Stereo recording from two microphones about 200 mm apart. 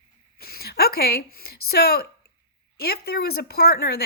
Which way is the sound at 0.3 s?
50° left (ahead or behind).